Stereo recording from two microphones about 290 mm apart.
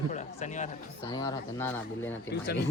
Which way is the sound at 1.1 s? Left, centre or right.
Centre.